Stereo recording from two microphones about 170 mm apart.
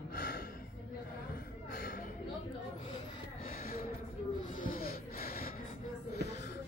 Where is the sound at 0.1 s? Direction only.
60° left (ahead or behind).